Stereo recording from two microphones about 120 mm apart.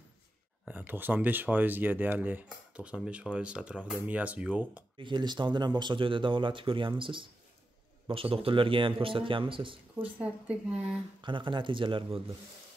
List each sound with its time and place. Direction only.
0.7 s speech: 15° right (ahead or behind)
4.9 s speech: 40° right (ahead or behind)
10.1 s speech: 10° right (ahead or behind)
11.1 s speech: 40° right (ahead or behind)